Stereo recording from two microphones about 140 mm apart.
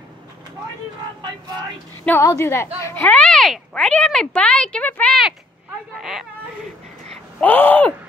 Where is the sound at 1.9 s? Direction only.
15° left (ahead or behind).